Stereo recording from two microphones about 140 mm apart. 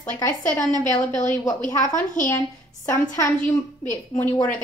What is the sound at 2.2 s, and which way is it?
A woman's voice, 20° left (ahead or behind).